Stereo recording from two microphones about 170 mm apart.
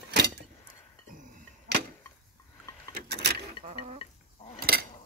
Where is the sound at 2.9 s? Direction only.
75° right (ahead or behind).